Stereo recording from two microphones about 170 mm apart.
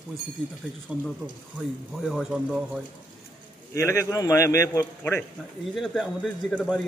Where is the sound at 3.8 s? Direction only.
15° left (ahead or behind).